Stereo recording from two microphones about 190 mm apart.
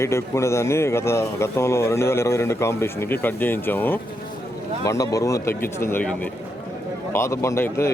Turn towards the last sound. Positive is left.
turn(degrees=15)  # may be behind; listen again after turning